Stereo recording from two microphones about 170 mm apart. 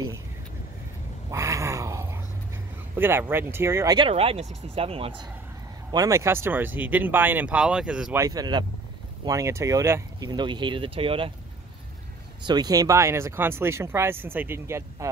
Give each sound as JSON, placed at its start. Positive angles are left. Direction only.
{"t": 1.3, "sound": "a sound", "side_deg": -20}
{"t": 3.0, "sound": "speech", "side_deg": -15}
{"t": 4.1, "sound": "speech", "side_deg": -35}
{"t": 5.9, "sound": "speech", "side_deg": -20}
{"t": 8.2, "sound": "speech", "side_deg": -20}
{"t": 12.4, "sound": "speech", "side_deg": -25}